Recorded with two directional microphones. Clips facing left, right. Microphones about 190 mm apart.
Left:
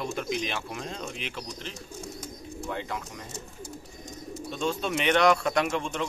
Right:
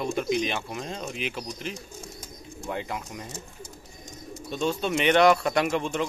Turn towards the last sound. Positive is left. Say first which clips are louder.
# right 2 dB
turn(degrees=-5)  # may be behind; listen again after turning